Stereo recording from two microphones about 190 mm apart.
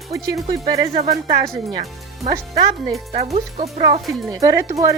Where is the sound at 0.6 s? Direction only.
35° right (ahead or behind).